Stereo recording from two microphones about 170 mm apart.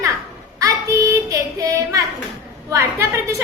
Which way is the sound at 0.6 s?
20° right (ahead or behind).